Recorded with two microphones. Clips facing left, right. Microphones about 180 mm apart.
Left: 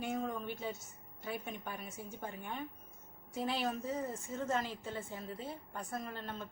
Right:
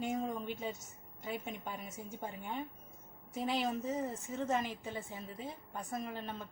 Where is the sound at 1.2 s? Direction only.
20° right (ahead or behind).